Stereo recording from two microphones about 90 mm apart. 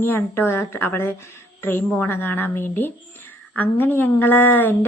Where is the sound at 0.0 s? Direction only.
25° left (ahead or behind).